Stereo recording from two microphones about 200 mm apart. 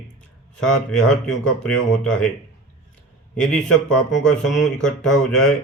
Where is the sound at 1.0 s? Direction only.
5° left (ahead or behind).